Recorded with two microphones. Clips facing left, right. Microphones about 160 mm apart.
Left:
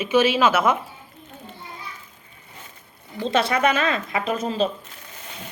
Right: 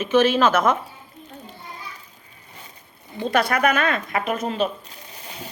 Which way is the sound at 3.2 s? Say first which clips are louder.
Even; 25° left (ahead or behind).